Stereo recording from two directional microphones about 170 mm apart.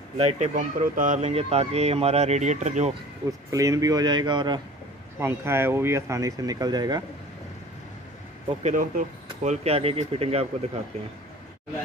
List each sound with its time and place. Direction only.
0.2 s speech: 40° right (ahead or behind)
2.9 s speech: 20° right (ahead or behind)
5.2 s speech: 15° right (ahead or behind)
8.6 s speech: 50° right (ahead or behind)